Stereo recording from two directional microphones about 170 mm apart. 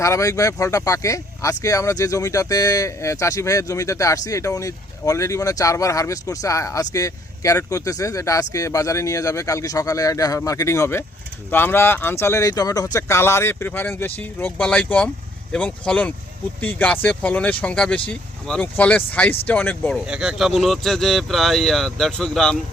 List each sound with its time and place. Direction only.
0.0 s speech: 20° left (ahead or behind)
20.1 s speech: 5° right (ahead or behind)